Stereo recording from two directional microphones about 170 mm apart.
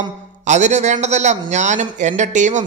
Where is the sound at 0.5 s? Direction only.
45° right (ahead or behind).